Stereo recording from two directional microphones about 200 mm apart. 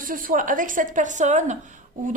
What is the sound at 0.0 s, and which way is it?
A woman's voice, 45° right (ahead or behind).